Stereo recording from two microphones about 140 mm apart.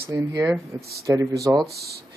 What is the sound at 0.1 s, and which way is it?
Speech, 20° right (ahead or behind).